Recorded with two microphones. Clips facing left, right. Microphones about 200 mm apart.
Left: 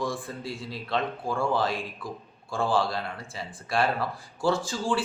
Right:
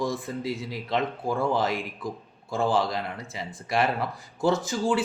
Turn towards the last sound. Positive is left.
turn(degrees=-20)  # may be behind; listen again after turning